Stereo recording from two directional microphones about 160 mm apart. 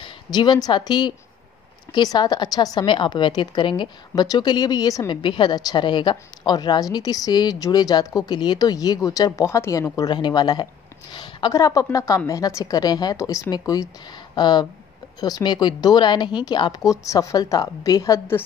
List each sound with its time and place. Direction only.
0.0 s a woman's voice: 25° left (ahead or behind)